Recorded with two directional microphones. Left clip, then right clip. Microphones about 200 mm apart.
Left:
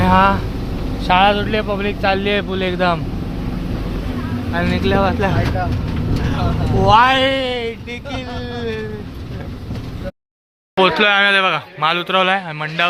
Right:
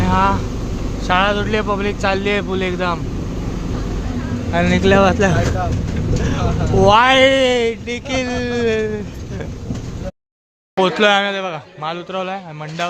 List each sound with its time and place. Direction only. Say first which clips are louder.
0.0 s speech: left 3 dB; 15° left (ahead or behind)
1.0 s speech: left 3 dB; centre (ahead or behind)
4.5 s speech: right 4 dB; 20° right (ahead or behind)
6.8 s speech: right 1 dB; 25° right (ahead or behind)
10.8 s speech: left 1 dB; 15° right (ahead or behind)